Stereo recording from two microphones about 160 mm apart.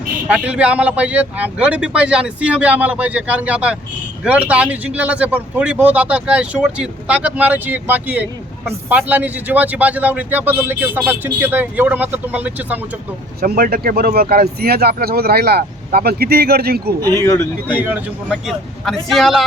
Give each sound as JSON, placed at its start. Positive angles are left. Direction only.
{"t": 0.3, "sound": "speech", "side_deg": -10}
{"t": 13.4, "sound": "speech", "side_deg": -65}
{"t": 17.2, "sound": "speech", "side_deg": 15}
{"t": 17.7, "sound": "speech", "side_deg": -10}
{"t": 18.3, "sound": "speech", "side_deg": 0}